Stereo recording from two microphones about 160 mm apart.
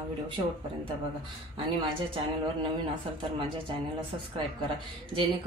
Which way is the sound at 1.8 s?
35° right (ahead or behind).